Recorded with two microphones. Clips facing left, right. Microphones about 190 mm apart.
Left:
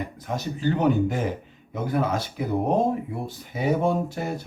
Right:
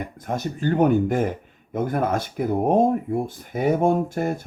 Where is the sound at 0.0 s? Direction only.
50° right (ahead or behind).